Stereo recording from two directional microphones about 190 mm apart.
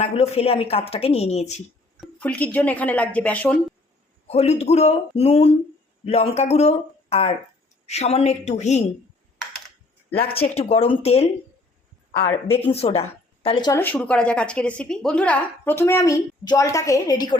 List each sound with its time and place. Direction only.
0.0 s speech: 35° left (ahead or behind)
2.0 s a woman's voice: 5° left (ahead or behind)
4.3 s speech: 35° left (ahead or behind)
10.5 s speech: 35° left (ahead or behind)
12.1 s a woman's voice: 15° left (ahead or behind)
12.6 s a woman's voice: 30° left (ahead or behind)
13.7 s a woman's voice: 10° left (ahead or behind)